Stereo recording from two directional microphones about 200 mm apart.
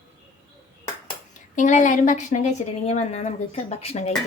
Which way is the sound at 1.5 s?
40° left (ahead or behind).